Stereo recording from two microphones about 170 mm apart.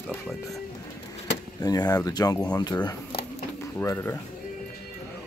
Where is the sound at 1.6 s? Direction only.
20° left (ahead or behind).